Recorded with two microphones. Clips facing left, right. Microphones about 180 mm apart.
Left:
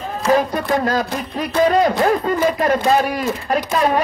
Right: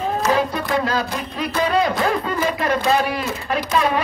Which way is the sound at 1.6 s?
45° left (ahead or behind).